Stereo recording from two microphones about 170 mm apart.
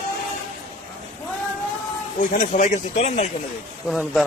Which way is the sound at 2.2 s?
50° left (ahead or behind).